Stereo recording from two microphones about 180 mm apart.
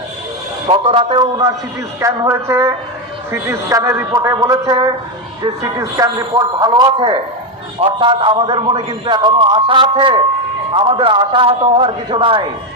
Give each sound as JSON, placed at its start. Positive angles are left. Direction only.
{"t": 0.7, "sound": "a man's voice", "side_deg": -30}